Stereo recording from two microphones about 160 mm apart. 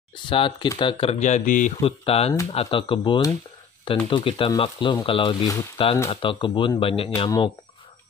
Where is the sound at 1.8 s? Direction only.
35° left (ahead or behind).